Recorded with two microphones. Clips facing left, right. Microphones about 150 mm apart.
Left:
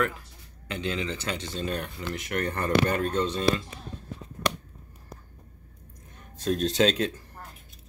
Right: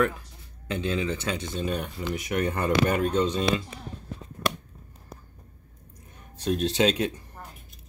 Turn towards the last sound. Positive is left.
turn(degrees=-10)  # may be behind; listen again after turning